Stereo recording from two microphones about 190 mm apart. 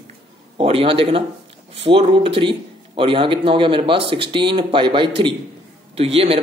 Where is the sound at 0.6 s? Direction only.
30° right (ahead or behind).